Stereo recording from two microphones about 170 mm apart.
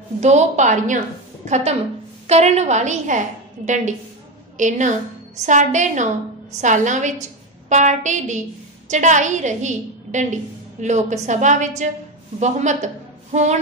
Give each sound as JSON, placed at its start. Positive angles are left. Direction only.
{"t": 0.2, "sound": "a woman's voice", "side_deg": -40}